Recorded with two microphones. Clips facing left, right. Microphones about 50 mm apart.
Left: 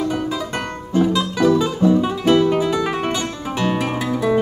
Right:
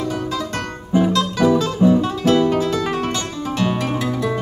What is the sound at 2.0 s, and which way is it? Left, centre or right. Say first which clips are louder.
Music: left 1 dB; centre.